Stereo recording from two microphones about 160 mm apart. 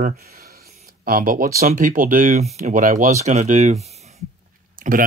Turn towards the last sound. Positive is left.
turn(degrees=-50)  # may be behind; listen again after turning